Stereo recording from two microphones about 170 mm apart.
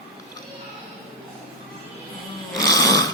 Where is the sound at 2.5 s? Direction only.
20° left (ahead or behind).